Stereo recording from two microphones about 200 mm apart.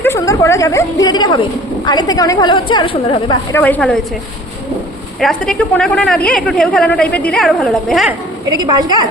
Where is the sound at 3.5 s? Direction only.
10° left (ahead or behind).